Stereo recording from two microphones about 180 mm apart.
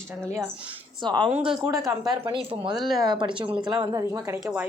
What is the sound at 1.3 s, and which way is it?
Speech, 30° right (ahead or behind).